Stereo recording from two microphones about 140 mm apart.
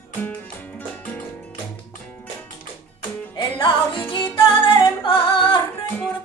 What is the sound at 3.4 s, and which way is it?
Music, 35° left (ahead or behind).